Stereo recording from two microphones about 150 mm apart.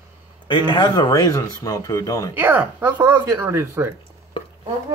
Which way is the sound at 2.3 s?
10° right (ahead or behind).